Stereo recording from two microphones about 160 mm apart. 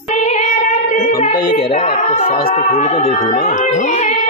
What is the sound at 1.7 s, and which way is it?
A man's voice, 40° left (ahead or behind).